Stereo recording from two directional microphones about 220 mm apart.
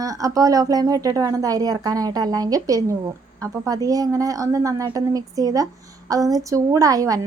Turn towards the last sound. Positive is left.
turn(degrees=-15)  # may be behind; listen again after turning